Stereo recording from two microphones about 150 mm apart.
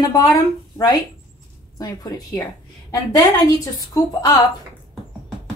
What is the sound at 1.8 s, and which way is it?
Speech, 25° left (ahead or behind).